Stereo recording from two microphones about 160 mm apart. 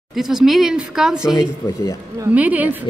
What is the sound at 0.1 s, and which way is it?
Speech, centre (ahead or behind).